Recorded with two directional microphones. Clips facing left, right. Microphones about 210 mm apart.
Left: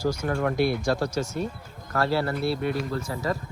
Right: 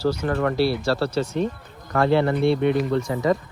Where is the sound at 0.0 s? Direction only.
10° left (ahead or behind).